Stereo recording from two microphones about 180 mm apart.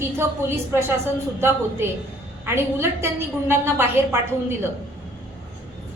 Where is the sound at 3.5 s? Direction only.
15° right (ahead or behind).